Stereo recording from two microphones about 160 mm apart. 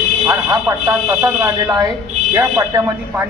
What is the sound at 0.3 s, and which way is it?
A man's voice, 20° right (ahead or behind).